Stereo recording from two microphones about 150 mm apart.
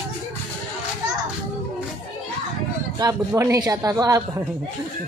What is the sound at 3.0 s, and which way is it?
Speech, 20° right (ahead or behind).